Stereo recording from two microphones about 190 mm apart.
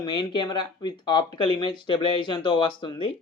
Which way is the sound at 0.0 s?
20° left (ahead or behind).